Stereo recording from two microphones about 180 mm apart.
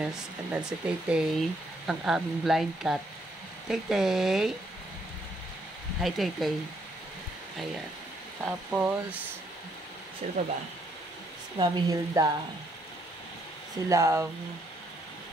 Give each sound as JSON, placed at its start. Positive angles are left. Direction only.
{"t": 0.0, "sound": "speech", "side_deg": -5}
{"t": 5.9, "sound": "speech", "side_deg": 0}
{"t": 8.5, "sound": "speech", "side_deg": -10}
{"t": 10.2, "sound": "speech", "side_deg": -40}
{"t": 11.5, "sound": "a woman's voice", "side_deg": -25}
{"t": 13.8, "sound": "speech", "side_deg": -15}